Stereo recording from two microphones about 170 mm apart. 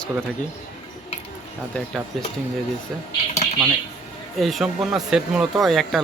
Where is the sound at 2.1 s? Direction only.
Centre (ahead or behind).